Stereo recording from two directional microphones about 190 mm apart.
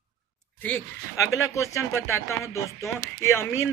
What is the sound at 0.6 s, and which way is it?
Speech, 10° left (ahead or behind).